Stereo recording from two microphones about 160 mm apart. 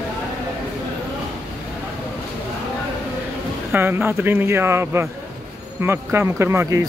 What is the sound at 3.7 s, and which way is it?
Speech, 15° right (ahead or behind).